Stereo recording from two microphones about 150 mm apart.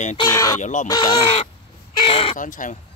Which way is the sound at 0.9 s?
30° left (ahead or behind).